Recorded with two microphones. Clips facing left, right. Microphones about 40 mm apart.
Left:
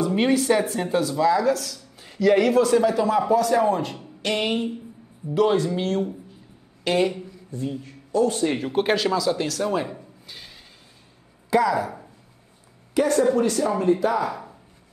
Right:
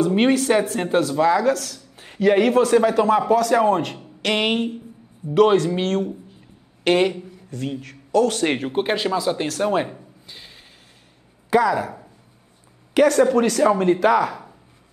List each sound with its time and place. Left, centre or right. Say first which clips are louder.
0.2 s speech: even; right
4.2 s speech: right 3 dB; right
7.8 s a man's voice: right 3 dB; right
8.5 s speech: right 2 dB; right
8.9 s speech: even; right
10.2 s a sound: even; centre
11.5 s speech: right 2 dB; right
12.9 s speech: right 4 dB; right